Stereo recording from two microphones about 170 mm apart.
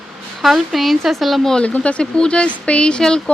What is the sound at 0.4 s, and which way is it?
Speech, centre (ahead or behind).